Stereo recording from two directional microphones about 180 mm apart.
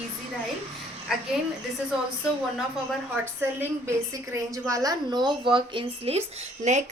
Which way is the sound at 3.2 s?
15° right (ahead or behind).